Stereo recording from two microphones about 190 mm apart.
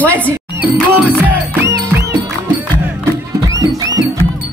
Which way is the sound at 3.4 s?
20° right (ahead or behind).